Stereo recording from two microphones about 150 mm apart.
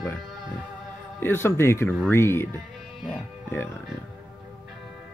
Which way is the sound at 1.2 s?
15° left (ahead or behind).